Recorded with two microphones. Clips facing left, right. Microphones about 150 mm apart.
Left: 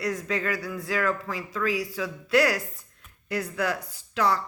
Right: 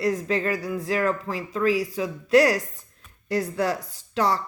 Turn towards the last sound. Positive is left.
turn(degrees=-30)  # may be behind; listen again after turning